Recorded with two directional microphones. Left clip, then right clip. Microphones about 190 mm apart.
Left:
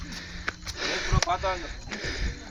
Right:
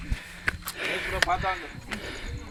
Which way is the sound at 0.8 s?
25° left (ahead or behind).